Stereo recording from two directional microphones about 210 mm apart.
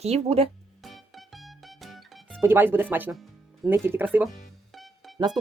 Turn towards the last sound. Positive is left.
turn(degrees=0)  # may be behind; listen again after turning